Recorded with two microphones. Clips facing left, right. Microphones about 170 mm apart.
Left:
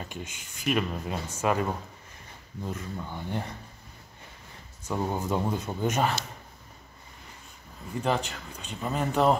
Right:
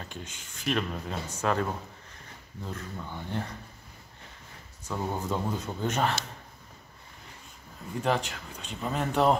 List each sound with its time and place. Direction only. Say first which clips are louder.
0.1 s speech: left 2 dB; 15° left (ahead or behind)
4.8 s speech: left 2 dB; 15° left (ahead or behind)
8.0 s speech: even; centre (ahead or behind)